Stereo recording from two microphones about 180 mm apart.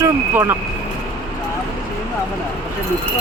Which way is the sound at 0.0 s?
10° right (ahead or behind).